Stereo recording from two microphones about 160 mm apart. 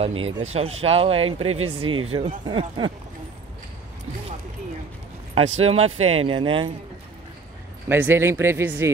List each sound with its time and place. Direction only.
0.0 s speech: 40° right (ahead or behind)
5.3 s speech: 40° right (ahead or behind)
7.9 s speech: 15° right (ahead or behind)